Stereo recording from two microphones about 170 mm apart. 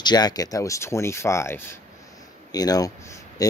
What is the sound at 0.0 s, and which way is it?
Speech, 25° left (ahead or behind).